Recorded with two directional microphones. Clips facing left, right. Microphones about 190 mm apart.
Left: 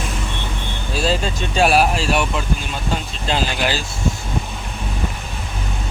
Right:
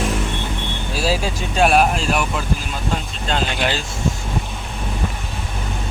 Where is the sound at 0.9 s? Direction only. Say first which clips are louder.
Left 1 dB; 5° right (ahead or behind).